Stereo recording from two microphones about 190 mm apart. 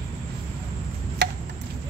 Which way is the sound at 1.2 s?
60° right (ahead or behind).